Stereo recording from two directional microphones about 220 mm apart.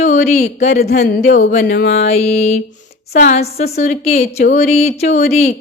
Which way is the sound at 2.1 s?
30° left (ahead or behind).